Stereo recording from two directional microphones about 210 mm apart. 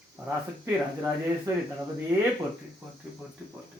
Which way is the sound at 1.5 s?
15° right (ahead or behind).